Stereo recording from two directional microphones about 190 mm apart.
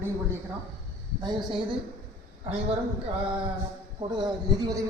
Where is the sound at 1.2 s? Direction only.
25° right (ahead or behind).